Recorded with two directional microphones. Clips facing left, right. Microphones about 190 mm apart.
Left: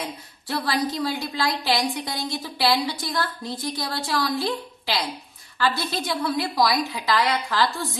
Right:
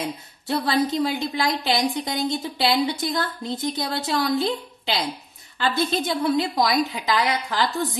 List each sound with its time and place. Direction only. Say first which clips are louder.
0.5 s a woman's voice: right 3 dB; 25° right (ahead or behind)